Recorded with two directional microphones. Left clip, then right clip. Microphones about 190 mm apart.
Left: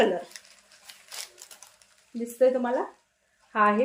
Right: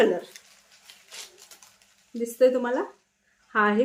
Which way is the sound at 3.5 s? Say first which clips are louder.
Even; 30° right (ahead or behind).